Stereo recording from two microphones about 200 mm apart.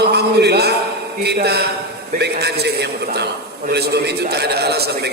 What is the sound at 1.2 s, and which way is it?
A man's voice, 55° right (ahead or behind).